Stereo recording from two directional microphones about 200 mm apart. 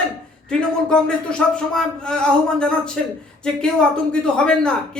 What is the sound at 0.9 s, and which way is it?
Speech, 5° left (ahead or behind).